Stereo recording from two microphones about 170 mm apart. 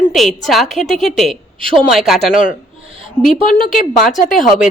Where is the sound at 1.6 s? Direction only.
30° right (ahead or behind).